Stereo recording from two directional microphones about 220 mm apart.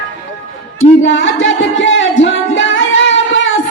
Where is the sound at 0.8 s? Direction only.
60° left (ahead or behind).